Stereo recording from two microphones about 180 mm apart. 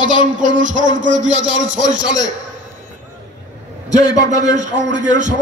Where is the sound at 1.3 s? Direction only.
90° right.